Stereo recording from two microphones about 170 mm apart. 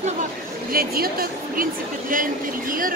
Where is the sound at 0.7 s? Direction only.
60° right (ahead or behind).